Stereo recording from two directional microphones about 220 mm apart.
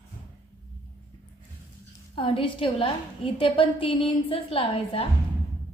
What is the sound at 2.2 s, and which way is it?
A woman's voice, 25° left (ahead or behind).